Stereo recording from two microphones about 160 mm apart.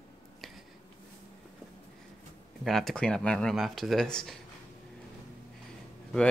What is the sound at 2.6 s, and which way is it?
Speech, centre (ahead or behind).